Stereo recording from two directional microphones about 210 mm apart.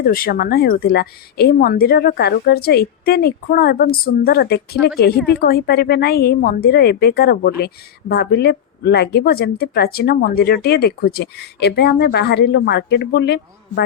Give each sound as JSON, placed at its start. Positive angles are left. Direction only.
{"t": 0.0, "sound": "speech", "side_deg": 45}